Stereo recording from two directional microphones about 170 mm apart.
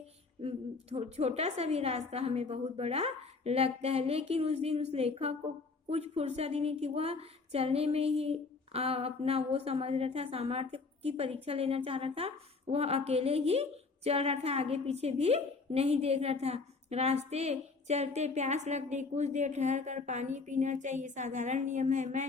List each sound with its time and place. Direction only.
0.4 s a woman's voice: 35° right (ahead or behind)